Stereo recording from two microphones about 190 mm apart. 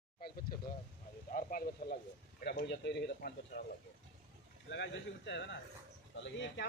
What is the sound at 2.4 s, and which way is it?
Speech, 60° left (ahead or behind).